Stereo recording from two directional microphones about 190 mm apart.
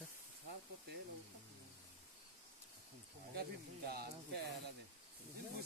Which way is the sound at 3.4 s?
55° right (ahead or behind).